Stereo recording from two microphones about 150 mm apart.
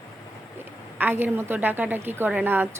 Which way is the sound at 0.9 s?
15° right (ahead or behind).